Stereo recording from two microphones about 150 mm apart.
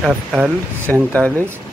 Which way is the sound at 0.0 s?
5° right (ahead or behind).